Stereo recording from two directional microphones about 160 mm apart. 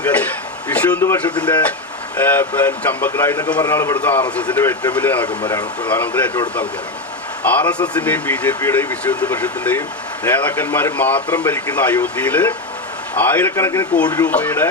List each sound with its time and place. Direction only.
0.0 s a sound: 10° left (ahead or behind)
0.7 s speech: 10° left (ahead or behind)
5.4 s speech: 25° left (ahead or behind)
5.9 s speech: 10° left (ahead or behind)
7.4 s speech: 10° left (ahead or behind)